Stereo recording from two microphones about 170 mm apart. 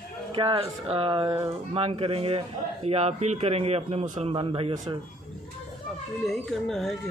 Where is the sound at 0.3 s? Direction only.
30° right (ahead or behind).